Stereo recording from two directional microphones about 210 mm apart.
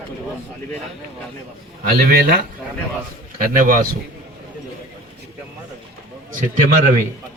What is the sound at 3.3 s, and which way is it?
Speech, 40° right (ahead or behind).